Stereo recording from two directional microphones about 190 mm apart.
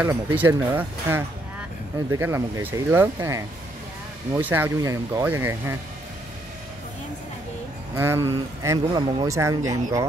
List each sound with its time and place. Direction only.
0.0 s speech: 10° right (ahead or behind)
7.9 s speech: 15° right (ahead or behind)